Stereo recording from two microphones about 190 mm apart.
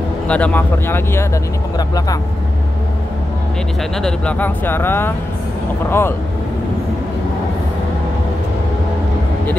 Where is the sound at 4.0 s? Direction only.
5° left (ahead or behind).